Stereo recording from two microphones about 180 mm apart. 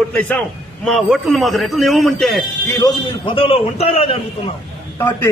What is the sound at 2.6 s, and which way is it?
Speech, 15° left (ahead or behind).